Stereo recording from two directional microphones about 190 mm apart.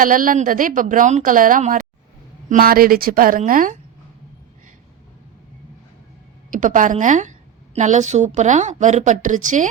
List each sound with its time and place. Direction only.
0.0 s speech: 45° right (ahead or behind)
6.5 s a woman's voice: 45° right (ahead or behind)